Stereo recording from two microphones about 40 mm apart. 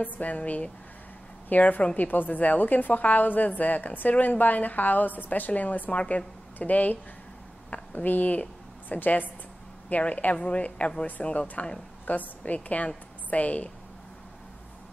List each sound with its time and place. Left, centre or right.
0.0 s a woman's voice: left
10.3 s a woman's voice: left